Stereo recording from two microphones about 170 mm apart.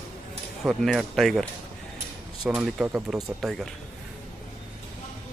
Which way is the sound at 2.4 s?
5° right (ahead or behind).